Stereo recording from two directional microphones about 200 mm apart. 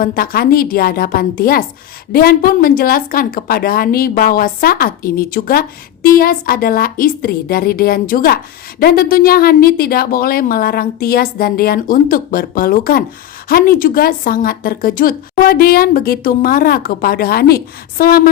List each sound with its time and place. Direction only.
0.0 s a woman's voice: 45° left (ahead or behind)